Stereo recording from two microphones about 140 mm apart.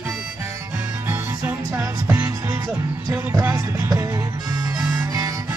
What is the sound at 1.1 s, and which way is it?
Music, 15° right (ahead or behind).